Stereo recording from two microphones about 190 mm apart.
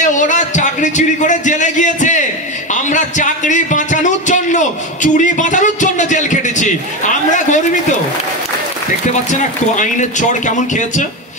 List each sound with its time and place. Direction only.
0.0 s a man's voice: 40° left (ahead or behind)
2.7 s a sound: 40° left (ahead or behind)
9.3 s a man's voice: 40° left (ahead or behind)